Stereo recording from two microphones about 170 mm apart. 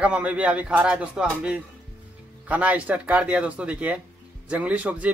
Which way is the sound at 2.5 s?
10° right (ahead or behind).